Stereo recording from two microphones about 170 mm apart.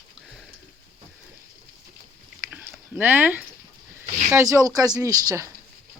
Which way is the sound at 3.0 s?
10° right (ahead or behind).